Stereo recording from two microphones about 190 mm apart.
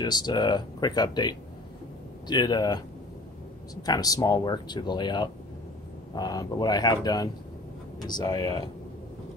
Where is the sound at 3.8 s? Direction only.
20° left (ahead or behind).